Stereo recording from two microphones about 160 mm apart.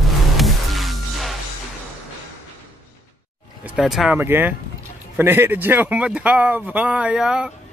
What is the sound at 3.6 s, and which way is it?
Speech, centre (ahead or behind).